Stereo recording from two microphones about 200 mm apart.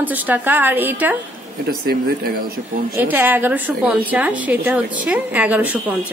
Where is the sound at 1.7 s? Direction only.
50° right (ahead or behind).